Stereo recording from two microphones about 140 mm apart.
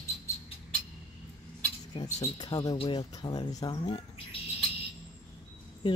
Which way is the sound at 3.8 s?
45° left (ahead or behind).